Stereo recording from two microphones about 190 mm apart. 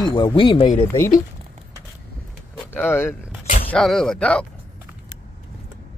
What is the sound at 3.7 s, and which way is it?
Speech, centre (ahead or behind).